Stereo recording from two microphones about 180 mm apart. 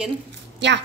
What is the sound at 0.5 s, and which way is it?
Speech, 80° right.